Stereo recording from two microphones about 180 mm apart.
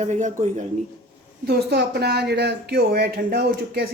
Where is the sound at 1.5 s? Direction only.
65° right (ahead or behind).